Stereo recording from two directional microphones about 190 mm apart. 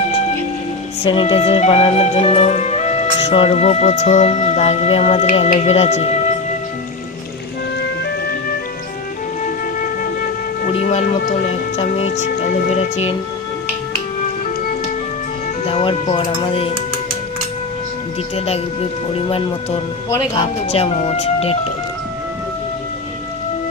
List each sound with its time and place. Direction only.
1.0 s music: 25° left (ahead or behind)
9.8 s music: 50° left (ahead or behind)
15.6 s speech: 30° left (ahead or behind)
18.3 s music: 30° left (ahead or behind)
20.1 s speech: 20° left (ahead or behind)
20.7 s music: 30° left (ahead or behind)